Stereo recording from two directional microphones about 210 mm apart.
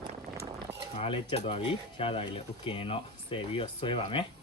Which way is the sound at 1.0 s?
25° left (ahead or behind).